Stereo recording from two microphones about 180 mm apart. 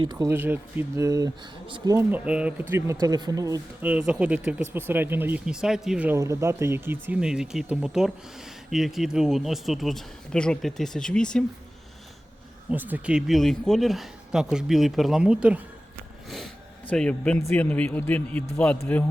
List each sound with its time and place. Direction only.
0.0 s speech: 20° right (ahead or behind)
0.3 s speech: 10° right (ahead or behind)
2.0 s speech: 10° right (ahead or behind)
12.7 s speech: 10° right (ahead or behind)
16.3 s a sound: 5° left (ahead or behind)
17.5 s a man's voice: 10° left (ahead or behind)